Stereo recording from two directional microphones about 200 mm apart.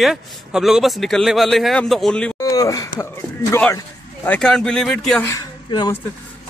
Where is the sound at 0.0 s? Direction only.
Centre (ahead or behind).